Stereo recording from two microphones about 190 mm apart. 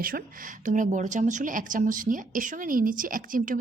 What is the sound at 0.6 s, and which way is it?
A woman's voice, 40° right (ahead or behind).